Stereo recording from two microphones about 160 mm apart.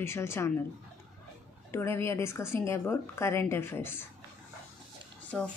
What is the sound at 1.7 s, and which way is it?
A woman's voice, 15° left (ahead or behind).